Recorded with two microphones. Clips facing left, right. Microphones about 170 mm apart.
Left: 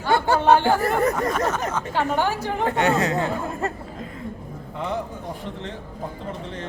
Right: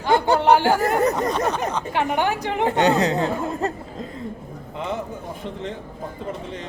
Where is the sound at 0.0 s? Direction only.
15° right (ahead or behind).